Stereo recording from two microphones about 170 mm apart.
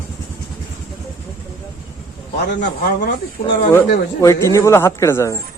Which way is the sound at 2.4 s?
80° left.